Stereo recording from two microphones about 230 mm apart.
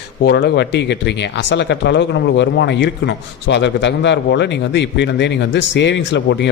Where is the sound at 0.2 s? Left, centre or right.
Left.